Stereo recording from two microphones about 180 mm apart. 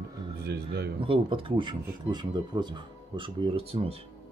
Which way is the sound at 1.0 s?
30° right (ahead or behind).